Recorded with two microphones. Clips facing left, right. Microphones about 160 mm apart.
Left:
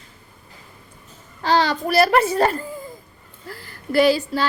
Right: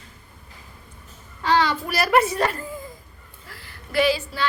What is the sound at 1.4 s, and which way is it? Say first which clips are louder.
A child's voice: left 2 dB; 35° left (ahead or behind).